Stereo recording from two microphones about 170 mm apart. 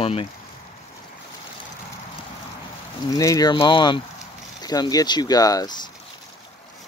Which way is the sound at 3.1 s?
20° left (ahead or behind).